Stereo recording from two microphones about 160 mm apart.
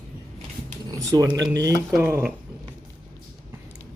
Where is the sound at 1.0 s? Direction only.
20° right (ahead or behind).